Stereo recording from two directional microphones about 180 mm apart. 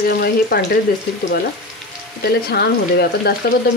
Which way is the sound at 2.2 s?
60° left (ahead or behind).